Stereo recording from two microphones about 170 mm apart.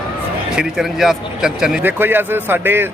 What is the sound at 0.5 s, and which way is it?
Speech, 5° right (ahead or behind).